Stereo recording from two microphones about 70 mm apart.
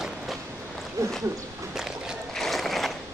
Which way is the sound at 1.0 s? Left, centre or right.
Right.